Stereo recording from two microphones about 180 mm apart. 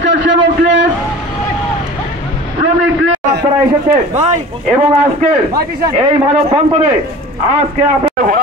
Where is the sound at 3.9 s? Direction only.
35° right (ahead or behind).